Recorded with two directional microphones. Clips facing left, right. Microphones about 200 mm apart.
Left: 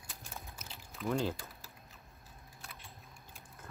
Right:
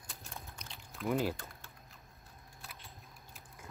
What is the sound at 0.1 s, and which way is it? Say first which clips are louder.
Pour: even; 5° left (ahead or behind).